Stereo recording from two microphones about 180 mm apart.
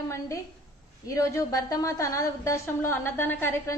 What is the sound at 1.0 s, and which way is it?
A woman's voice, 15° left (ahead or behind).